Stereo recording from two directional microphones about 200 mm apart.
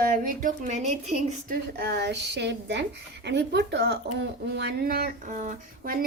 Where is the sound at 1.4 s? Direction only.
55° right (ahead or behind).